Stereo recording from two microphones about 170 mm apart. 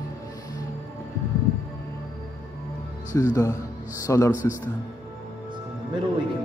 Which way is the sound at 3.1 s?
20° left (ahead or behind).